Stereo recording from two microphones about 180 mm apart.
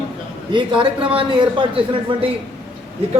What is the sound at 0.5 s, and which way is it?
Speech, 30° right (ahead or behind).